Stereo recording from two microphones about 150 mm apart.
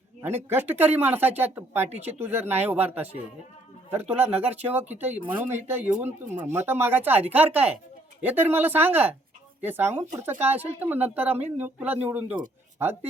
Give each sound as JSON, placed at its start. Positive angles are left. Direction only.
{"t": 0.2, "sound": "speech", "side_deg": -15}